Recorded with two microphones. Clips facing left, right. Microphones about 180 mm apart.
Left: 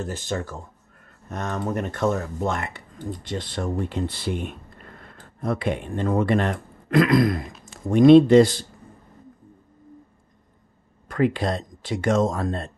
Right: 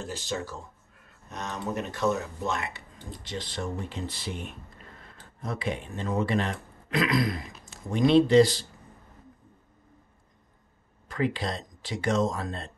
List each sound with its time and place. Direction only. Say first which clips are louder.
0.0 s speech: left 5 dB; 50° left (ahead or behind)
11.1 s speech: left 7 dB; 55° left (ahead or behind)